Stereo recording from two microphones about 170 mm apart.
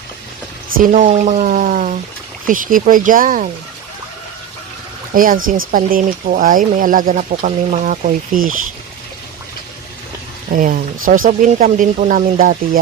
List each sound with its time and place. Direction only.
0.8 s speech: 50° right (ahead or behind)
5.1 s speech: 55° right (ahead or behind)
10.5 s speech: 55° right (ahead or behind)